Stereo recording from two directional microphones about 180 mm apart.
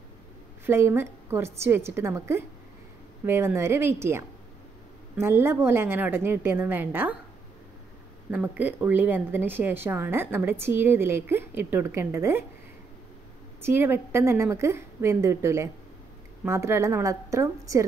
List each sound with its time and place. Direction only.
0.7 s speech: 15° right (ahead or behind)
8.3 s speech: 10° right (ahead or behind)
13.6 s speech: 15° right (ahead or behind)